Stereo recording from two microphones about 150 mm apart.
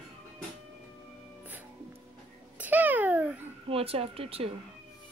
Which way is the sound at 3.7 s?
40° right (ahead or behind).